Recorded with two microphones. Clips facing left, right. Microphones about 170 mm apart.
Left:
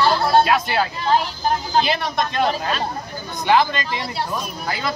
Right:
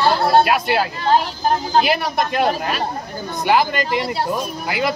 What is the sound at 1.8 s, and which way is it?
Speech, 10° right (ahead or behind).